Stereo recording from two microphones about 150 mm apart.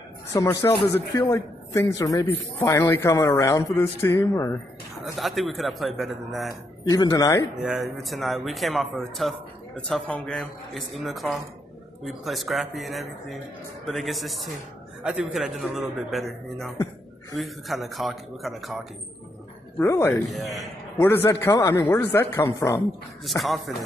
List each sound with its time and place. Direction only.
0.3 s a man's voice: 20° left (ahead or behind)
5.0 s a man's voice: centre (ahead or behind)
6.8 s a man's voice: 25° left (ahead or behind)
7.6 s a man's voice: centre (ahead or behind)
19.8 s a man's voice: 20° left (ahead or behind)
20.2 s a man's voice: centre (ahead or behind)
21.0 s a man's voice: 15° left (ahead or behind)
23.2 s a man's voice: centre (ahead or behind)